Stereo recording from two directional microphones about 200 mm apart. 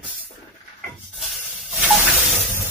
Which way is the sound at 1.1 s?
Centre (ahead or behind).